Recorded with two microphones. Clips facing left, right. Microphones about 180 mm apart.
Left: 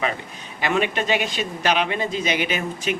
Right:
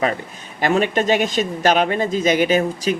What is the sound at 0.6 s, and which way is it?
A man's voice, 45° right (ahead or behind).